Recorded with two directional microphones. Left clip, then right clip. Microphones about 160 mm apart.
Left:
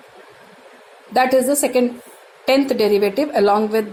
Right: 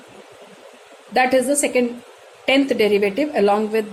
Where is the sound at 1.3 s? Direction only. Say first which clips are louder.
Left 1 dB; 20° left (ahead or behind).